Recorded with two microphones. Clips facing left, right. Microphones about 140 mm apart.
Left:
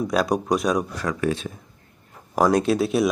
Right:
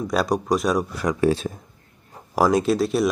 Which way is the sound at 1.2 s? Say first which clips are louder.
Right 6 dB; 35° right (ahead or behind).